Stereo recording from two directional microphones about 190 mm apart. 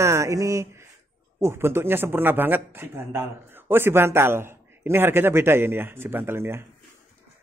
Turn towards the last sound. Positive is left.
turn(degrees=-15)  # may be behind; listen again after turning